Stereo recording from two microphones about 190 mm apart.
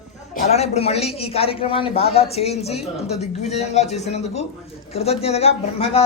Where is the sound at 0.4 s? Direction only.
35° left (ahead or behind).